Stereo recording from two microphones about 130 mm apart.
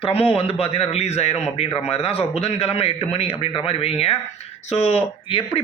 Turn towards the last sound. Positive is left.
turn(degrees=50)  # may be behind; listen again after turning